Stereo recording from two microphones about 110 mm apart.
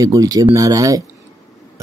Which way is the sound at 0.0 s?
35° right (ahead or behind).